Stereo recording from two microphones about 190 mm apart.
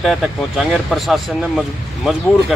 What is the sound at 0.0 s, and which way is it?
Speech, centre (ahead or behind).